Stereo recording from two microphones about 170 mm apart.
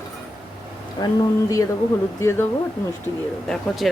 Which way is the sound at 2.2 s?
15° left (ahead or behind).